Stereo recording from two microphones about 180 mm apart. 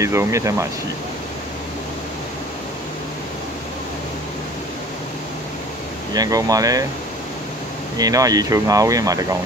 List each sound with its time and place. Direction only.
0.0 s speech: 15° right (ahead or behind)
6.1 s speech: 20° right (ahead or behind)
8.0 s speech: 20° right (ahead or behind)